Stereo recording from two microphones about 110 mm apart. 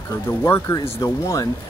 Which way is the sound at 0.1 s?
25° left (ahead or behind).